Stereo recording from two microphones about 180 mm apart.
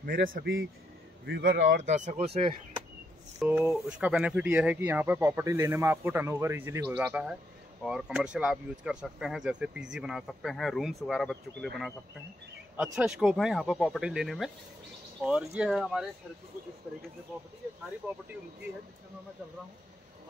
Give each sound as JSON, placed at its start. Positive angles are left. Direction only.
{"t": 0.0, "sound": "speech", "side_deg": -50}
{"t": 3.3, "sound": "speech", "side_deg": -10}
{"t": 15.5, "sound": "speech", "side_deg": -5}